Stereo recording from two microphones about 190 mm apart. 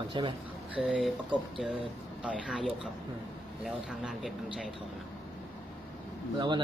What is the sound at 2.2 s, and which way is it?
Speech, 5° right (ahead or behind).